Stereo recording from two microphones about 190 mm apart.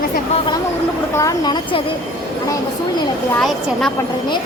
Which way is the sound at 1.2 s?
20° left (ahead or behind).